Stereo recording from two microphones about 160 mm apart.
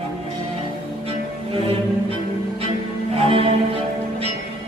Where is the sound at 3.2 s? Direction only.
35° right (ahead or behind).